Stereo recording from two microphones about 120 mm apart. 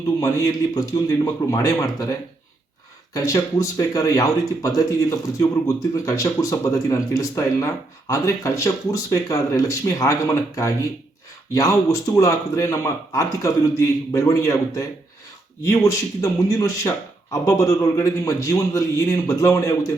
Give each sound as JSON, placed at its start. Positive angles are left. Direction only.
{"t": 0.2, "sound": "speech", "side_deg": 30}